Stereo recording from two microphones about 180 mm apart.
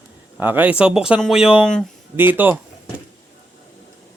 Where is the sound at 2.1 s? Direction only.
10° right (ahead or behind).